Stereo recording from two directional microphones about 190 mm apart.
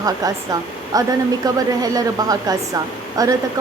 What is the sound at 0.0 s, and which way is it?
Speech, 20° right (ahead or behind).